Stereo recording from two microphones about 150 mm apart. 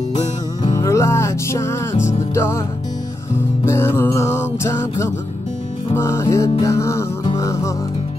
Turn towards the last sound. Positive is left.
turn(degrees=20)  # may be behind; listen again after turning